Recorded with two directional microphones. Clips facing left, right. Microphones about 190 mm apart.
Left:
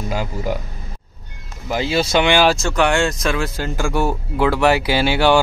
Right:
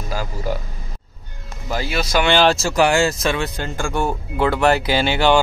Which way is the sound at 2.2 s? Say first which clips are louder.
Right 2 dB; 10° left (ahead or behind).